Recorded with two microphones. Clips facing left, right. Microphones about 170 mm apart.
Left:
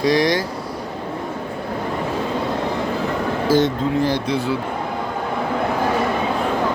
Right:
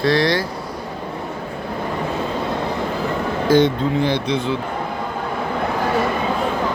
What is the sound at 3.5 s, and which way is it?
Speech, centre (ahead or behind).